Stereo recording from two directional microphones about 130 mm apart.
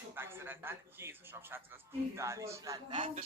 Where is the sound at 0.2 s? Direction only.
15° right (ahead or behind).